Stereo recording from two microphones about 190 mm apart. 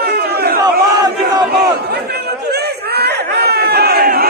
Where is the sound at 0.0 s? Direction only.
60° right (ahead or behind).